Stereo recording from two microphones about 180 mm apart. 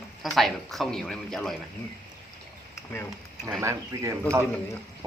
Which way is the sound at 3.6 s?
15° right (ahead or behind).